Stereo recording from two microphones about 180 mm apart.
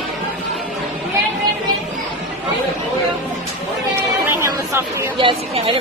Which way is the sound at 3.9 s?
15° right (ahead or behind).